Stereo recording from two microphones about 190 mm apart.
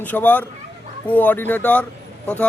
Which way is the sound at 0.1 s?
10° left (ahead or behind).